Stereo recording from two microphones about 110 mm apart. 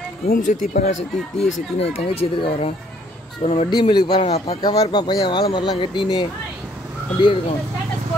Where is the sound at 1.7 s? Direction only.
60° left (ahead or behind).